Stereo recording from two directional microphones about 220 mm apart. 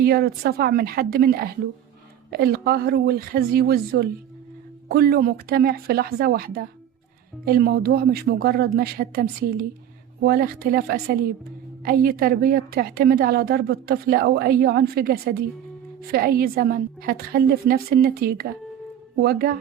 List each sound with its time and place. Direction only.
0.0 s a woman's voice: 45° right (ahead or behind)